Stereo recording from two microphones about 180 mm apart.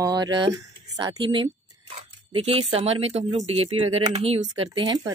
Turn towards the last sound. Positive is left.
turn(degrees=-25)  # may be behind; listen again after turning